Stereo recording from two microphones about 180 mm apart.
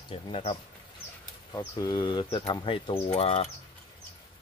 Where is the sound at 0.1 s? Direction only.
30° left (ahead or behind).